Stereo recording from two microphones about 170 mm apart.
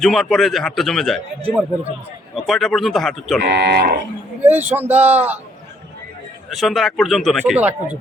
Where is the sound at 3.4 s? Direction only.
75° right (ahead or behind).